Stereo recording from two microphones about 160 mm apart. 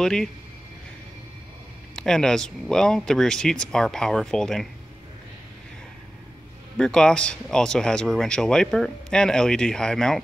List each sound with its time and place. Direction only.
0.0 s speech: 5° left (ahead or behind)
2.0 s speech: 5° left (ahead or behind)
6.8 s speech: 5° left (ahead or behind)